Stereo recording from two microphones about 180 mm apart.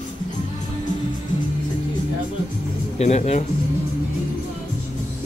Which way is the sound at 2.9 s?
40° left (ahead or behind).